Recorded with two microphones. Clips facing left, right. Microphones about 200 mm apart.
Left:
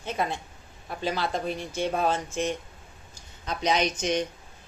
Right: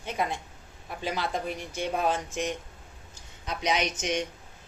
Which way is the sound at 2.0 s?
15° right (ahead or behind).